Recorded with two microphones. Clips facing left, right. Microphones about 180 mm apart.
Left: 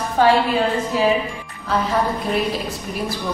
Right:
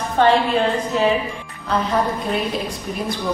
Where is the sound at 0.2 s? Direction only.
5° left (ahead or behind).